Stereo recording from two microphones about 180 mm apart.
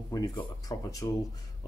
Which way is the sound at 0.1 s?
20° left (ahead or behind).